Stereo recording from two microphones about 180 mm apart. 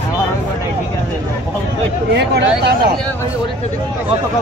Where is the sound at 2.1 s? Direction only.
70° right (ahead or behind).